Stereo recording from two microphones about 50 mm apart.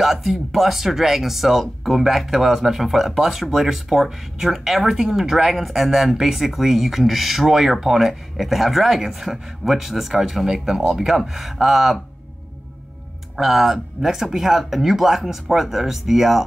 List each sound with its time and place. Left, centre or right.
0.0 s speech: centre
13.4 s speech: centre